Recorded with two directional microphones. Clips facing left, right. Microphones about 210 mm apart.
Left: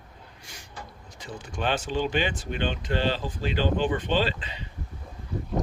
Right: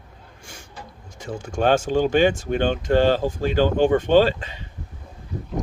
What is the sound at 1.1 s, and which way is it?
Speech, 45° right (ahead or behind).